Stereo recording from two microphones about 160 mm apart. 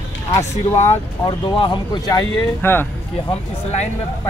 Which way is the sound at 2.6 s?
15° left (ahead or behind).